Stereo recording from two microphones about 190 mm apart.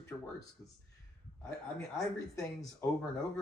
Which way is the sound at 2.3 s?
15° left (ahead or behind).